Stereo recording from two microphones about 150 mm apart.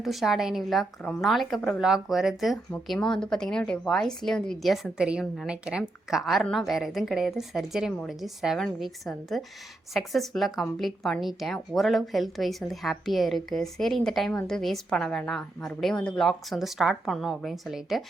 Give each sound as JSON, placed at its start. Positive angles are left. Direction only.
{"t": 0.0, "sound": "a woman's voice", "side_deg": 0}